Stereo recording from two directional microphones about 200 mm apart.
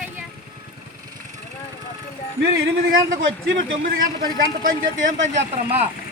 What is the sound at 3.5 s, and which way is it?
A man's voice, 45° right (ahead or behind).